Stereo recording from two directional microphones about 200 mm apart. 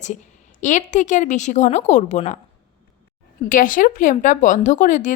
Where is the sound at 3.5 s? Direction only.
45° left (ahead or behind).